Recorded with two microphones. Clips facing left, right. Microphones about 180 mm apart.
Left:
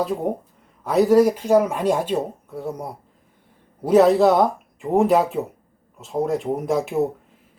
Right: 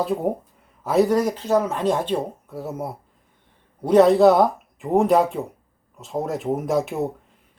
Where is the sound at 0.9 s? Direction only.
Centre (ahead or behind).